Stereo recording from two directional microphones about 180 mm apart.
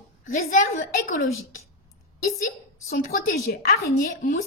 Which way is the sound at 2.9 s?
50° left (ahead or behind).